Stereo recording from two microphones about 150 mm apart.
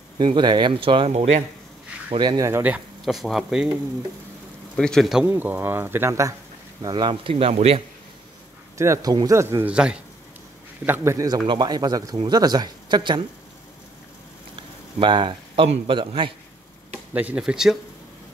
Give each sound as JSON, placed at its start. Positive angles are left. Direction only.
{"t": 0.2, "sound": "speech", "side_deg": -30}
{"t": 2.0, "sound": "speech", "side_deg": -25}
{"t": 2.6, "sound": "speech", "side_deg": -5}
{"t": 4.7, "sound": "speech", "side_deg": 5}
{"t": 5.2, "sound": "speech", "side_deg": -15}
{"t": 8.7, "sound": "speech", "side_deg": -20}
{"t": 9.7, "sound": "speech", "side_deg": -5}
{"t": 10.9, "sound": "speech", "side_deg": -20}
{"t": 15.0, "sound": "speech", "side_deg": -35}
{"t": 17.1, "sound": "speech", "side_deg": -10}